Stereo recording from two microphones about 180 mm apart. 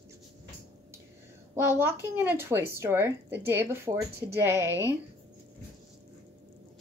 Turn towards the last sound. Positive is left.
turn(degrees=-15)  # may be behind; listen again after turning